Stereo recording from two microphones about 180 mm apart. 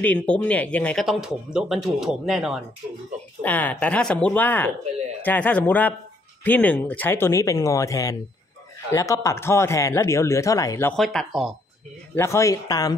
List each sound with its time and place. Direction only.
0.0 s speech: 10° left (ahead or behind)
3.4 s speech: 10° left (ahead or behind)
11.0 s speech: centre (ahead or behind)
12.1 s speech: 15° left (ahead or behind)